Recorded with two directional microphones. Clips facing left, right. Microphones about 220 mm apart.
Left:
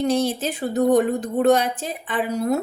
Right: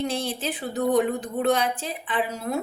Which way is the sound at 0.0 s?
40° left (ahead or behind).